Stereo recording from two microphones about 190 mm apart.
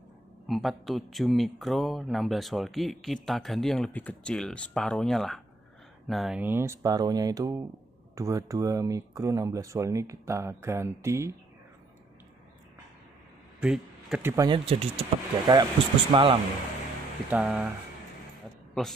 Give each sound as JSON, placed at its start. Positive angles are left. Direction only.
{"t": 0.5, "sound": "speech", "side_deg": 0}
{"t": 13.6, "sound": "speech", "side_deg": -5}
{"t": 14.5, "sound": "speech", "side_deg": -30}
{"t": 17.3, "sound": "speech", "side_deg": -10}
{"t": 18.8, "sound": "speech", "side_deg": 0}